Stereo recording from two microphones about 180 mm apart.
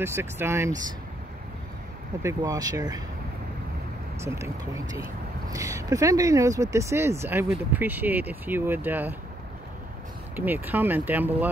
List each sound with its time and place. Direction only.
0.0 s speech: 15° right (ahead or behind)
2.2 s speech: 20° right (ahead or behind)
4.2 s speech: 15° right (ahead or behind)
10.3 s speech: 10° right (ahead or behind)